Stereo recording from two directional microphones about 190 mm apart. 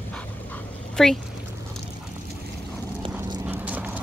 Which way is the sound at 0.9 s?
Centre (ahead or behind).